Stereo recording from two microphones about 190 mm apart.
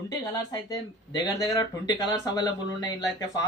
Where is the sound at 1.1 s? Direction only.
20° left (ahead or behind).